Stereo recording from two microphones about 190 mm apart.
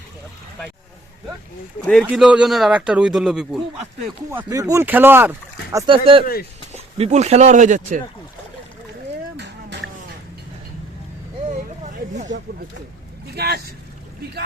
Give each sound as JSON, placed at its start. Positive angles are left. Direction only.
{"t": 1.9, "sound": "a man's voice", "side_deg": -5}
{"t": 4.3, "sound": "speech", "side_deg": -15}
{"t": 5.8, "sound": "speech", "side_deg": -25}
{"t": 13.3, "sound": "speech", "side_deg": -60}